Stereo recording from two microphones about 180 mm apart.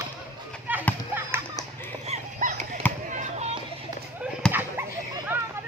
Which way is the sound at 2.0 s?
40° right (ahead or behind).